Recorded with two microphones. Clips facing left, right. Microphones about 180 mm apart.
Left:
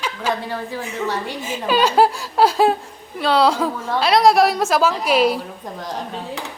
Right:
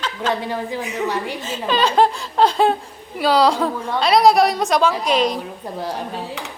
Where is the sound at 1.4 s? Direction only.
10° left (ahead or behind).